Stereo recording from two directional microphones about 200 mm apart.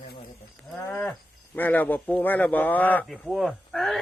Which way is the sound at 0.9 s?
5° left (ahead or behind).